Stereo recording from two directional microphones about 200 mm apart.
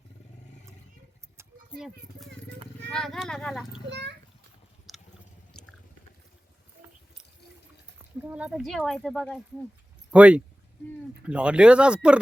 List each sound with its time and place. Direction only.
1.7 s speech: centre (ahead or behind)
3.8 s a child's voice: 55° right (ahead or behind)
4.9 s a sound: centre (ahead or behind)
5.5 s chewing: 5° left (ahead or behind)
7.9 s speech: 10° right (ahead or behind)